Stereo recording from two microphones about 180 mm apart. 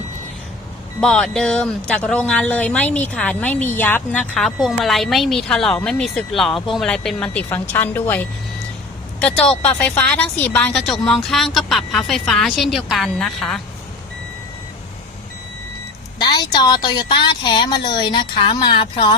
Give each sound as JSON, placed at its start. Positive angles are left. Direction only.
{"t": 1.0, "sound": "speech", "side_deg": 5}
{"t": 16.1, "sound": "a woman's voice", "side_deg": 25}